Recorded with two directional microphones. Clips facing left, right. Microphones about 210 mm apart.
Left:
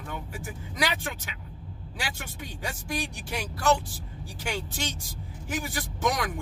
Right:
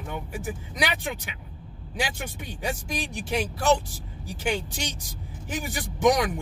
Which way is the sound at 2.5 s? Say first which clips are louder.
Right 2 dB; 20° right (ahead or behind).